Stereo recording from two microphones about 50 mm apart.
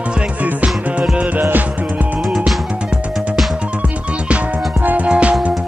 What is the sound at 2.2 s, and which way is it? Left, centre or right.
Music, centre.